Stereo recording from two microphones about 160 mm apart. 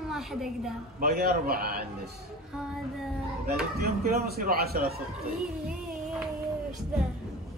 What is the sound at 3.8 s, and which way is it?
A man's voice, 75° right (ahead or behind).